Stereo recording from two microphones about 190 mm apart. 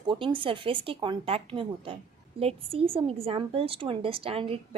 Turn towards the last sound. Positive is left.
turn(degrees=-30)  # may be behind; listen again after turning